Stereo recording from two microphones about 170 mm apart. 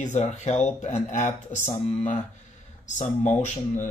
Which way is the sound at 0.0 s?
45° left (ahead or behind).